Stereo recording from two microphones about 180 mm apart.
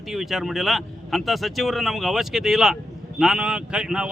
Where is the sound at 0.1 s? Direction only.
Centre (ahead or behind).